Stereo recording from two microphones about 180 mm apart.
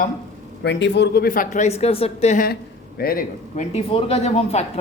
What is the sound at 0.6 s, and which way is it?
Speech, 75° left (ahead or behind).